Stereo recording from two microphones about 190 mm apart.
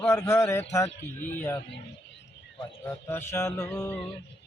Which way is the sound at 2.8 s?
10° left (ahead or behind).